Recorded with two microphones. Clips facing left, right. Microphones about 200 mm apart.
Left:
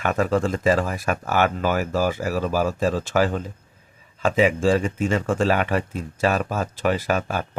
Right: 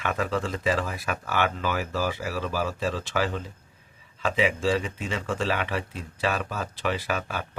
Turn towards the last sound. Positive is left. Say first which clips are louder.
# left 6 dB
turn(degrees=45)  # may be behind; listen again after turning